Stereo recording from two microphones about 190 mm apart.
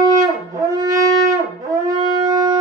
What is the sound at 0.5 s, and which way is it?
Shofar, 20° right (ahead or behind).